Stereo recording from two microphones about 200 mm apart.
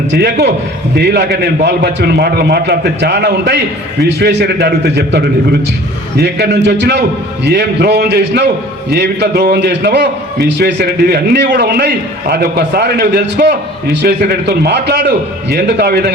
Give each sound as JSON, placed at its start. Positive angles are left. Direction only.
{"t": 0.1, "sound": "a man's voice", "side_deg": -55}